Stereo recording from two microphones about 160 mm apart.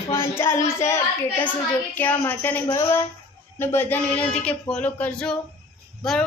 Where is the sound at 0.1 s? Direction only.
15° left (ahead or behind).